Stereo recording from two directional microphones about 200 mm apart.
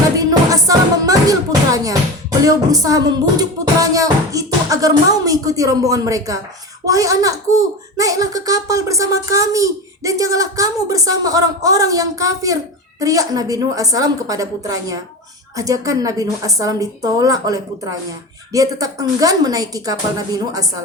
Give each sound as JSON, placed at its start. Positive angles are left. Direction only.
{"t": 0.2, "sound": "music", "side_deg": -15}
{"t": 2.4, "sound": "a child's voice", "side_deg": -15}